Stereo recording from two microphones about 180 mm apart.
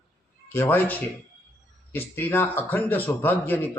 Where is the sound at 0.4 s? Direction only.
10° left (ahead or behind).